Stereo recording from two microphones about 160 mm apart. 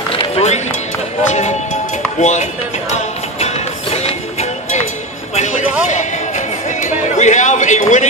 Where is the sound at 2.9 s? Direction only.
40° left (ahead or behind).